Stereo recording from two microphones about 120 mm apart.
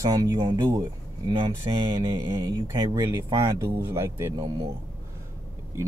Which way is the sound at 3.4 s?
20° right (ahead or behind).